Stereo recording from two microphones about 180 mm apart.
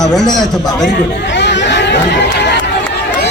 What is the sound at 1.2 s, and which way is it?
Chatter, 75° left (ahead or behind).